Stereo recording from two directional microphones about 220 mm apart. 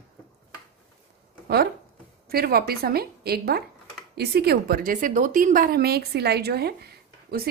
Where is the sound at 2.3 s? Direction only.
45° right (ahead or behind).